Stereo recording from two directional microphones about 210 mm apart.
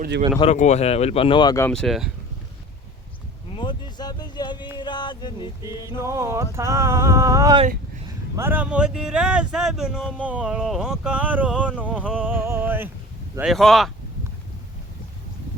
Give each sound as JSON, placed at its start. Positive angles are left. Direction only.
{"t": 0.3, "sound": "speech", "side_deg": 30}
{"t": 1.7, "sound": "speech", "side_deg": 0}
{"t": 3.5, "sound": "vehicle", "side_deg": 20}
{"t": 4.8, "sound": "music", "side_deg": 20}
{"t": 5.6, "sound": "music", "side_deg": -15}
{"t": 8.4, "sound": "speech", "side_deg": -10}
{"t": 11.6, "sound": "music", "side_deg": -5}
{"t": 13.4, "sound": "speech", "side_deg": 0}